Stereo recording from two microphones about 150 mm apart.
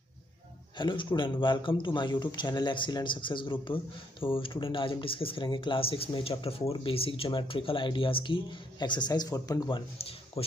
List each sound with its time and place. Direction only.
0.7 s speech: 30° left (ahead or behind)
9.9 s speech: 40° left (ahead or behind)